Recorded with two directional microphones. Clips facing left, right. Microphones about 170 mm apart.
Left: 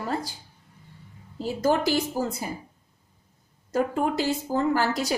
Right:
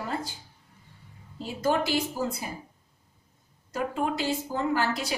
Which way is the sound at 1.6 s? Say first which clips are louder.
Left 3 dB; 40° left (ahead or behind).